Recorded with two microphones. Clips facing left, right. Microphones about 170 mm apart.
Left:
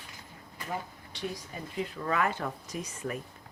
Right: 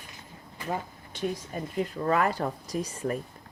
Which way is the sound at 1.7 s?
40° right (ahead or behind).